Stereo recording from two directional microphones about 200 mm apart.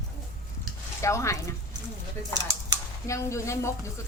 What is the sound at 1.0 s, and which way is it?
Speech, 15° left (ahead or behind).